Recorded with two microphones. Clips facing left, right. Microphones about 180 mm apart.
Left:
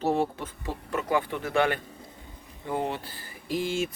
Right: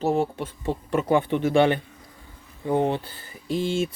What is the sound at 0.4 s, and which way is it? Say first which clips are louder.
Speech: right 6 dB; 30° right (ahead or behind).